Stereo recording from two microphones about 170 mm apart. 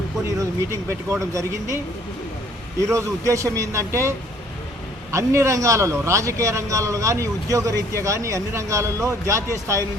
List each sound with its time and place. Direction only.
0.3 s a man's voice: 15° right (ahead or behind)
5.1 s a man's voice: 15° right (ahead or behind)